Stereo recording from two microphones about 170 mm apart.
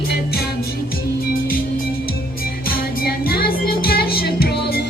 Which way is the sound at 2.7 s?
60° left (ahead or behind).